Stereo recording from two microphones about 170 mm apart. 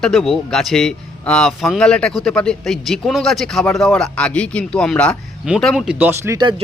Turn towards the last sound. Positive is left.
turn(degrees=-25)  # may be behind; listen again after turning